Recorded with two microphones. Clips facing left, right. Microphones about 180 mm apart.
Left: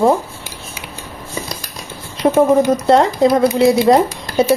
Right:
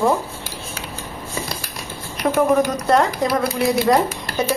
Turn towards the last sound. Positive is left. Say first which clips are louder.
# left 5 dB
turn(degrees=20)  # may be behind; listen again after turning